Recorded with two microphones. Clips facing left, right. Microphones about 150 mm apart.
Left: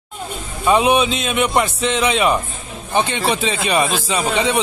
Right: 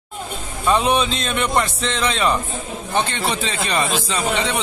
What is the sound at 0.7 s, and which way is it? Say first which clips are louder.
A man's voice: left 3 dB; 10° left (ahead or behind).